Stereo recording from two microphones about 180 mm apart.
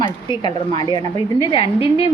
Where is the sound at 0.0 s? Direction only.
25° left (ahead or behind).